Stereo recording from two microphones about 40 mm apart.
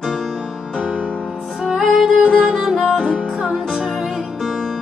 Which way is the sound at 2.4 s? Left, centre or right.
Right.